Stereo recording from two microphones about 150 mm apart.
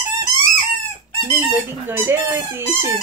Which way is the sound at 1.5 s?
15° right (ahead or behind).